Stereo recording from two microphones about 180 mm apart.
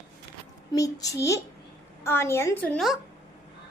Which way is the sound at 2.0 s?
15° left (ahead or behind).